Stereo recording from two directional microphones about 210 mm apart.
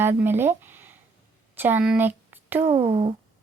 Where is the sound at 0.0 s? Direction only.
10° right (ahead or behind).